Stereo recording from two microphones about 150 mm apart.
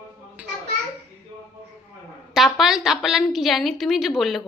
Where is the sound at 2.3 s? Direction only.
Centre (ahead or behind).